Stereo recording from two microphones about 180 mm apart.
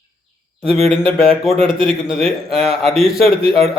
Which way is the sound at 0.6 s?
30° right (ahead or behind).